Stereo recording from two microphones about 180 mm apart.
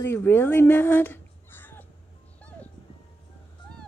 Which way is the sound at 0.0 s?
15° left (ahead or behind).